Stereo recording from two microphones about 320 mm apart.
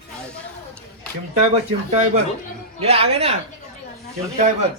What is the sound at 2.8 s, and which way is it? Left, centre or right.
Speech, centre.